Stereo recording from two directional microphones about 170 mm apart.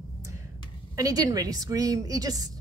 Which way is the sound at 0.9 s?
20° right (ahead or behind).